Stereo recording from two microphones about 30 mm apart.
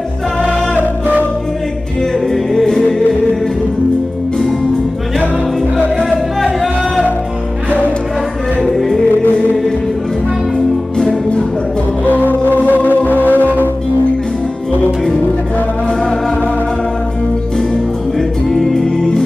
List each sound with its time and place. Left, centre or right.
2.1 s music: centre
12.1 s music: left
12.7 s music: left
18.5 s music: centre